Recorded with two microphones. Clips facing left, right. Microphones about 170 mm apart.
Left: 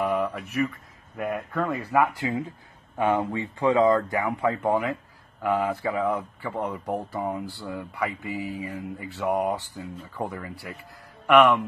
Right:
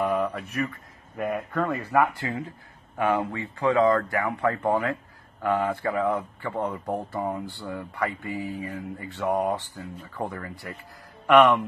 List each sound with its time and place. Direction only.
0.0 s mantra: centre (ahead or behind)
1.1 s speech: centre (ahead or behind)
2.2 s mantra: 15° left (ahead or behind)
6.1 s speech: centre (ahead or behind)
7.6 s mantra: 10° left (ahead or behind)
11.2 s speech: centre (ahead or behind)